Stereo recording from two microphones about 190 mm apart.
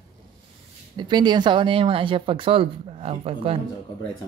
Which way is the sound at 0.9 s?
25° right (ahead or behind).